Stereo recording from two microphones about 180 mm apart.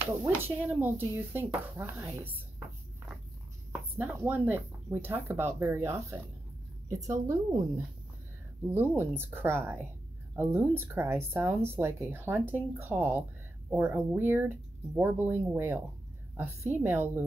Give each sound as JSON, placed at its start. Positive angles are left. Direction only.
{"t": 0.2, "sound": "speech", "side_deg": -10}
{"t": 3.7, "sound": "speech", "side_deg": -10}
{"t": 8.7, "sound": "speech", "side_deg": -10}